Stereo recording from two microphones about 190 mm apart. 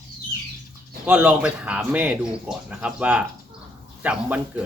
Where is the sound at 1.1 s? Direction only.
10° right (ahead or behind).